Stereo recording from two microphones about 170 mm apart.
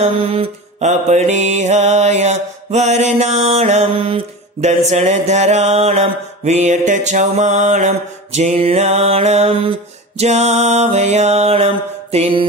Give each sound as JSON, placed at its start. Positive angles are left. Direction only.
{"t": 0.0, "sound": "mantra", "side_deg": -35}